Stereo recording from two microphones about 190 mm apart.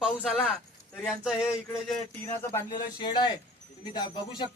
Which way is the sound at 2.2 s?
15° left (ahead or behind).